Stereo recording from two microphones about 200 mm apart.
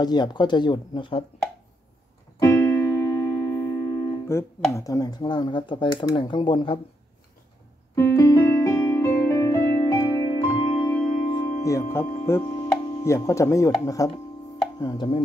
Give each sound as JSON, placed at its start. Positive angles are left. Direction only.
{"t": 0.0, "sound": "speech", "side_deg": 20}
{"t": 2.4, "sound": "keyboard", "side_deg": 15}
{"t": 4.3, "sound": "speech", "side_deg": 15}
{"t": 7.9, "sound": "music", "side_deg": 15}
{"t": 11.6, "sound": "speech", "side_deg": 15}